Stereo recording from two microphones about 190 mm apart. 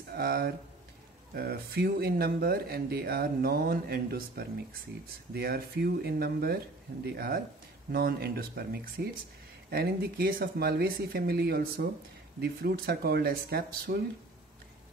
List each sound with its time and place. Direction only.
0.1 s speech: 50° right (ahead or behind)